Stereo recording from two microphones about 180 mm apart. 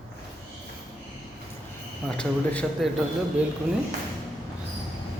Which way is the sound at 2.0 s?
5° left (ahead or behind).